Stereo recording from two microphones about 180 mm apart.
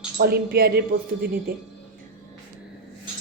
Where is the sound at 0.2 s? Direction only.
60° right (ahead or behind).